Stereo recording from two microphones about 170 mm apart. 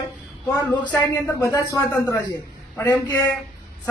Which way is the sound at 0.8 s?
10° left (ahead or behind).